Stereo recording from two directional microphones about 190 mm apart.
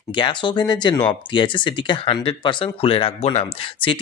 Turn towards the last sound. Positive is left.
turn(degrees=30)  # may be behind; listen again after turning